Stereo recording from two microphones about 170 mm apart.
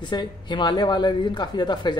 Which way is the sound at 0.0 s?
25° left (ahead or behind).